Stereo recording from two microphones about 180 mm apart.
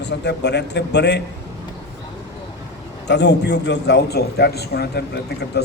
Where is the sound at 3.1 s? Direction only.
70° left (ahead or behind).